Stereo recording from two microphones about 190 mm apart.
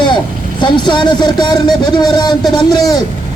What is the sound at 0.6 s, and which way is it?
A man's voice, 25° left (ahead or behind).